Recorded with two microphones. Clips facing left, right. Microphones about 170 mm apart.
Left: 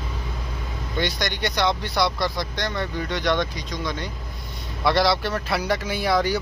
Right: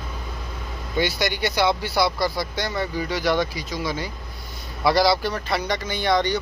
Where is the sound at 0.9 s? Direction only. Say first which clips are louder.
Right 3 dB; 5° right (ahead or behind).